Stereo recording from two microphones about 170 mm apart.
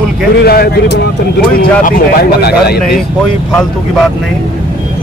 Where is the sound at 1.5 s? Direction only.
60° left (ahead or behind).